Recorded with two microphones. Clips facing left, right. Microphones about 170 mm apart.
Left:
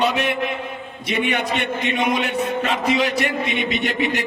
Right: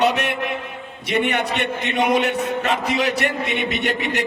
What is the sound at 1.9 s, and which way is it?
Speech, 65° right (ahead or behind).